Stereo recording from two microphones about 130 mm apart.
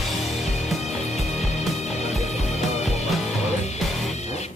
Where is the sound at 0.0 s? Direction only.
Centre (ahead or behind).